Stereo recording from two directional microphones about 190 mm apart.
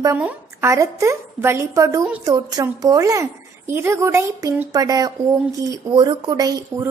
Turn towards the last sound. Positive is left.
turn(degrees=-15)  # may be behind; listen again after turning